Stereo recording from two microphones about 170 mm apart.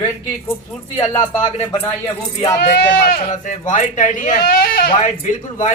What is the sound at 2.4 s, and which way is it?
Speech, 20° left (ahead or behind).